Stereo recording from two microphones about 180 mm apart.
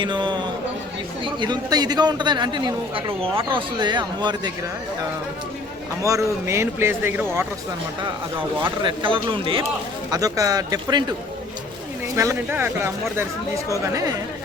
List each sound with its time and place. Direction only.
0.0 s a man's voice: 25° right (ahead or behind)
6.0 s speech: 15° right (ahead or behind)
8.8 s a man's voice: 25° right (ahead or behind)
12.1 s speech: 15° right (ahead or behind)